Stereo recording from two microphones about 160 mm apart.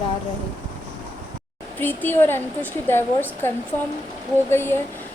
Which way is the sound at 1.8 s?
10° left (ahead or behind).